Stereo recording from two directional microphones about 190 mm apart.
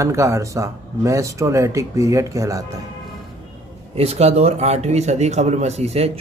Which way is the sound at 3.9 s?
35° right (ahead or behind).